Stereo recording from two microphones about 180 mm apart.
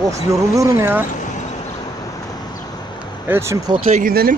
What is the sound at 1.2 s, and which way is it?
Basketball bounce, 40° left (ahead or behind).